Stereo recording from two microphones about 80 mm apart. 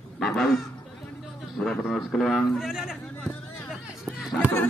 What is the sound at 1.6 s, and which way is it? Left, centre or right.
A man's voice, centre.